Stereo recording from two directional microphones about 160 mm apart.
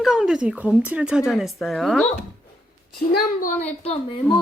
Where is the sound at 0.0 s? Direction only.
Centre (ahead or behind).